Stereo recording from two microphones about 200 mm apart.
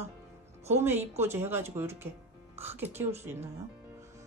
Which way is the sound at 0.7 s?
10° right (ahead or behind).